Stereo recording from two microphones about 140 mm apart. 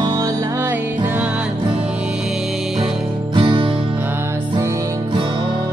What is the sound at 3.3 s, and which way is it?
Music, 40° right (ahead or behind).